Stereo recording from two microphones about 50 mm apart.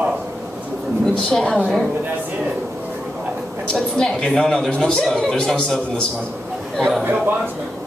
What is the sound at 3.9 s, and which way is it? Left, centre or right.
Speech, centre.